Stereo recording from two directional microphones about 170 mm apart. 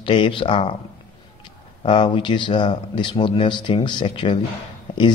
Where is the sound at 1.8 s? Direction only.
30° left (ahead or behind).